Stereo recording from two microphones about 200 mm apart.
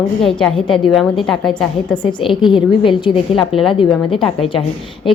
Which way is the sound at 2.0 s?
20° left (ahead or behind).